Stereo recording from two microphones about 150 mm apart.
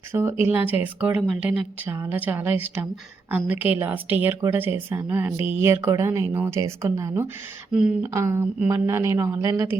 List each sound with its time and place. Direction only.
0.1 s speech: 15° right (ahead or behind)
7.7 s speech: 5° right (ahead or behind)
8.0 s speech: 20° right (ahead or behind)